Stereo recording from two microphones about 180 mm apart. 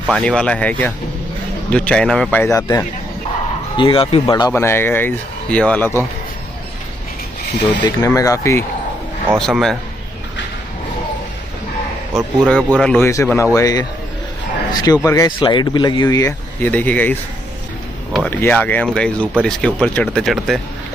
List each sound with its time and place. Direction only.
0.0 s speech: 5° left (ahead or behind)
3.7 s speech: 30° left (ahead or behind)
4.3 s speech: 15° left (ahead or behind)
7.8 s speech: 20° left (ahead or behind)
9.4 s speech: 5° left (ahead or behind)
12.1 s speech: centre (ahead or behind)
13.1 s a man's voice: 15° left (ahead or behind)
16.6 s speech: 10° left (ahead or behind)